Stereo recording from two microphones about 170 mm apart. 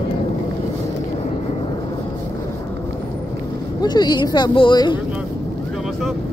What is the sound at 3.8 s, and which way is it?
Speech, 25° left (ahead or behind).